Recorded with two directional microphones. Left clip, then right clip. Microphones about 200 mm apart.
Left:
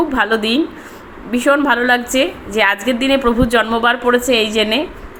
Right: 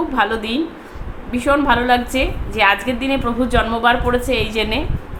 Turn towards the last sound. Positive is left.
turn(degrees=15)  # may be behind; listen again after turning